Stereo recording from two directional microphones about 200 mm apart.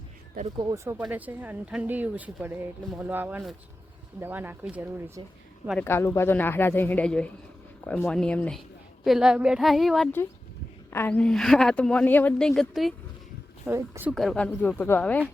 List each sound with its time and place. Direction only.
0.5 s speech: 20° right (ahead or behind)
5.8 s speech: 10° left (ahead or behind)
13.7 s speech: 10° right (ahead or behind); by 15.2 s 10° left (ahead or behind)